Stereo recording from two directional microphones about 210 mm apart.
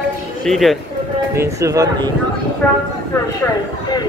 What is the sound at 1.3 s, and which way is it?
Speech, 15° right (ahead or behind).